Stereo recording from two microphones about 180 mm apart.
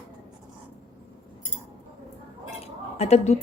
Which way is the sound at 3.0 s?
35° left (ahead or behind).